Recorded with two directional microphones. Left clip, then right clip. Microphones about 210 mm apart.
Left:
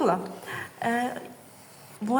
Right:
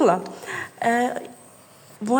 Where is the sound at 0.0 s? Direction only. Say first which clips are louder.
Right 6 dB; 40° right (ahead or behind).